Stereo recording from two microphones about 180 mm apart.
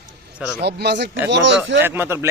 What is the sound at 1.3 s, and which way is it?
Speech, 90° right.